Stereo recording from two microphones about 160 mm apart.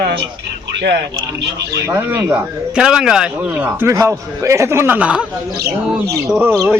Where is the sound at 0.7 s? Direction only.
90° right.